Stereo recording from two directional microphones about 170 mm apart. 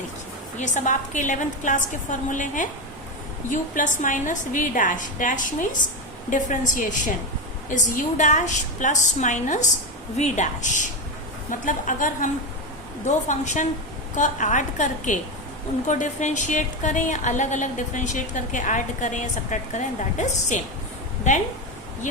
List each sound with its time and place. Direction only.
0.5 s speech: 45° left (ahead or behind)